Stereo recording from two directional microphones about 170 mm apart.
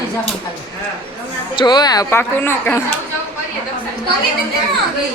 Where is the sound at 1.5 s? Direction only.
25° left (ahead or behind).